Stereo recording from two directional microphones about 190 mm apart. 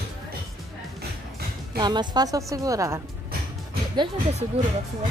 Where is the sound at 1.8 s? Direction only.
20° right (ahead or behind).